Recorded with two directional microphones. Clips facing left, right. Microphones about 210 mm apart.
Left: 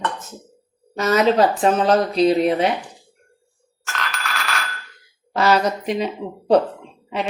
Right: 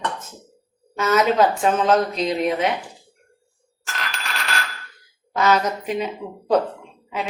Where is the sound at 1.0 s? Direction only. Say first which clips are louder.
Left 2 dB; 35° left (ahead or behind).